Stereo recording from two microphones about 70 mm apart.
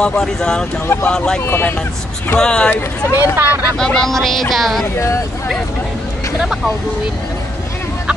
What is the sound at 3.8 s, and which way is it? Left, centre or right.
A woman's voice, centre.